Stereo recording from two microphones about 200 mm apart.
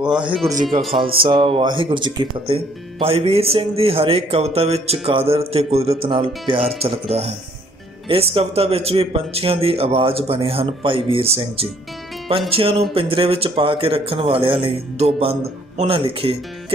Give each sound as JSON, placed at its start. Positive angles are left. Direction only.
{"t": 0.0, "sound": "speech", "side_deg": -5}
{"t": 1.2, "sound": "speech", "side_deg": -25}